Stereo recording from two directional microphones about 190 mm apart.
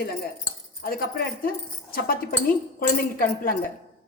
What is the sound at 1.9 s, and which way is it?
A woman's voice, 50° left (ahead or behind).